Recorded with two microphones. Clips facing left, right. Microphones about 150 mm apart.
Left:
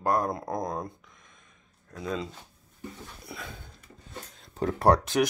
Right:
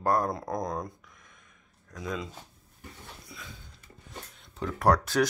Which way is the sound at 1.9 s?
30° left (ahead or behind).